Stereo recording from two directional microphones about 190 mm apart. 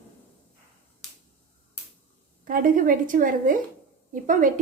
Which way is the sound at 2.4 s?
45° right (ahead or behind).